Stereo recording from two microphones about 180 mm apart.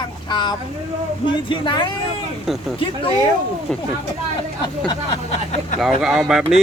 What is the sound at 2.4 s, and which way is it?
Speech, centre (ahead or behind).